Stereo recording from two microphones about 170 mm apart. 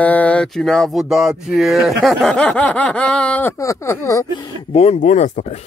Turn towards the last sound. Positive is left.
turn(degrees=40)  # may be behind; listen again after turning